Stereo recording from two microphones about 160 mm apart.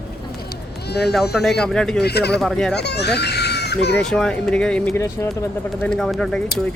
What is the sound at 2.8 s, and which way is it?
A child's voice, 90° left.